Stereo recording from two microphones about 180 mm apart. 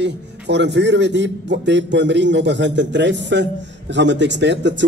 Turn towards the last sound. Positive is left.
turn(degrees=-80)